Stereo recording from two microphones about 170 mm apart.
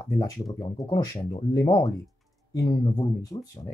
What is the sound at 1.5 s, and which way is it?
Speech, 30° left (ahead or behind).